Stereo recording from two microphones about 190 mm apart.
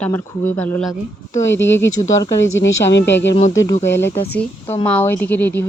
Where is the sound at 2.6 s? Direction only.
70° left (ahead or behind).